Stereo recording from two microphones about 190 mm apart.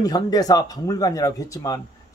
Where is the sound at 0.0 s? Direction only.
20° left (ahead or behind).